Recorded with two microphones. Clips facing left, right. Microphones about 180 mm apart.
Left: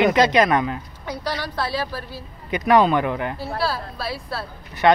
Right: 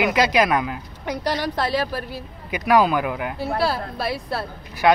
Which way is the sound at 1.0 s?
15° right (ahead or behind).